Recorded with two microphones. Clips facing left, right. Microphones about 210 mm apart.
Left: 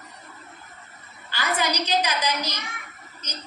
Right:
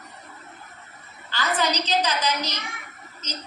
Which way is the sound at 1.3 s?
10° left (ahead or behind).